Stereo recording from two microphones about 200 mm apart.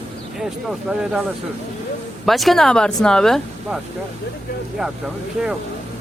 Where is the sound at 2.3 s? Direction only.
Centre (ahead or behind).